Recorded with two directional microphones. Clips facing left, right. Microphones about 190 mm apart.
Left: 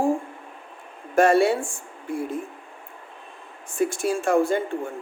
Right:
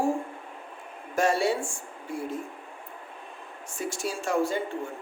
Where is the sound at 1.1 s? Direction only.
55° left (ahead or behind).